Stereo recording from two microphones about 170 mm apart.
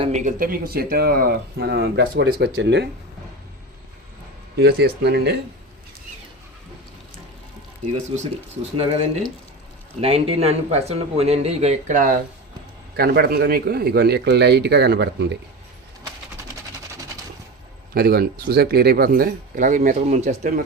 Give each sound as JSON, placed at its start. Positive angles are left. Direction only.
{"t": 0.0, "sound": "speech", "side_deg": -45}
{"t": 4.5, "sound": "speech", "side_deg": -70}
{"t": 7.9, "sound": "speech", "side_deg": -45}
{"t": 10.0, "sound": "speech", "side_deg": -35}
{"t": 13.0, "sound": "speech", "side_deg": -65}
{"t": 17.9, "sound": "speech", "side_deg": -60}